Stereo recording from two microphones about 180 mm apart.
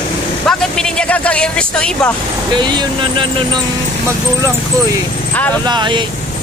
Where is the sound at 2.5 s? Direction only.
25° right (ahead or behind).